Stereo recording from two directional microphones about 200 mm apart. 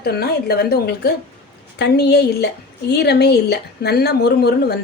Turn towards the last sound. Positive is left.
turn(degrees=55)  # may be behind; listen again after turning